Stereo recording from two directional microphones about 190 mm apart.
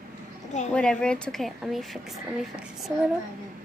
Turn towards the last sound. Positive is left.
turn(degrees=-5)  # may be behind; listen again after turning